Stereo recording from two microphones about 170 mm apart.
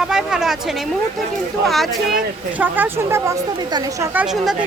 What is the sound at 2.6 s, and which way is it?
A woman's voice, 15° right (ahead or behind).